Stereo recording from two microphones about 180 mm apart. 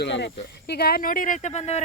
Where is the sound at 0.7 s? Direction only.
60° left (ahead or behind); by 1.8 s 40° left (ahead or behind).